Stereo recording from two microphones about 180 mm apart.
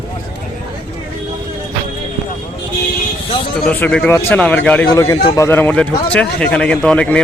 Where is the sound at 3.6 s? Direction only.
10° left (ahead or behind).